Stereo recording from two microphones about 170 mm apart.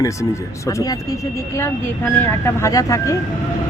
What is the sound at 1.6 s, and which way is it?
Speech, 15° left (ahead or behind).